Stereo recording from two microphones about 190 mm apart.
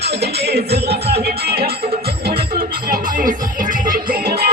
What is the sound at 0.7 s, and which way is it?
Music, 30° right (ahead or behind).